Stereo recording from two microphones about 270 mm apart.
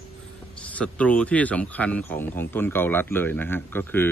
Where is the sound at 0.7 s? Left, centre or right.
Centre.